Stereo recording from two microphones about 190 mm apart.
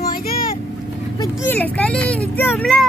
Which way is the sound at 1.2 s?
10° left (ahead or behind).